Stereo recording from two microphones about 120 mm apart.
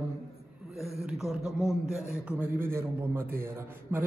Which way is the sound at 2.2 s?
15° right (ahead or behind).